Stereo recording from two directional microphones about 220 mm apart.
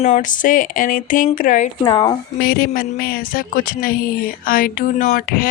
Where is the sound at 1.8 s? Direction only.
15° left (ahead or behind).